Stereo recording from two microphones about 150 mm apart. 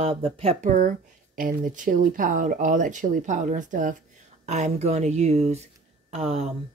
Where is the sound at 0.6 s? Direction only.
60° right (ahead or behind).